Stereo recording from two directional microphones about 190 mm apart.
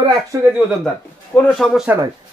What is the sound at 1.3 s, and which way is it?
Speech, centre (ahead or behind).